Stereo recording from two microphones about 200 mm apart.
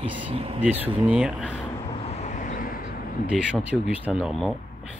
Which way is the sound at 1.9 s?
30° left (ahead or behind).